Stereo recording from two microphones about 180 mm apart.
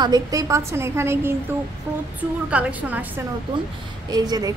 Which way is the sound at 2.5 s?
10° right (ahead or behind).